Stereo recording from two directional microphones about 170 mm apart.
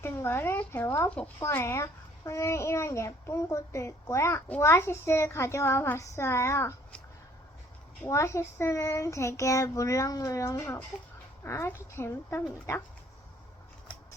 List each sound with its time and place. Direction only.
0.0 s speech: 15° left (ahead or behind)
8.0 s speech: 15° left (ahead or behind)